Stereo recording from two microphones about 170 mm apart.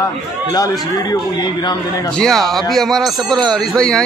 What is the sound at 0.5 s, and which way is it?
Speech, 20° left (ahead or behind).